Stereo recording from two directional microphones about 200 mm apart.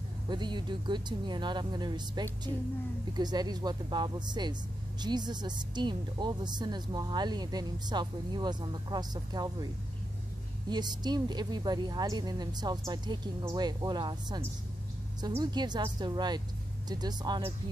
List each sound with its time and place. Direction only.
0.3 s speech: 20° right (ahead or behind)
10.7 s speech: 20° right (ahead or behind)